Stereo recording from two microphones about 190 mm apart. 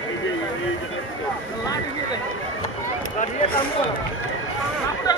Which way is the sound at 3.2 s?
40° left (ahead or behind).